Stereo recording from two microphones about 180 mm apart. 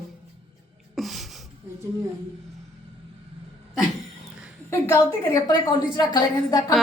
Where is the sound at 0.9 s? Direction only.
Centre (ahead or behind).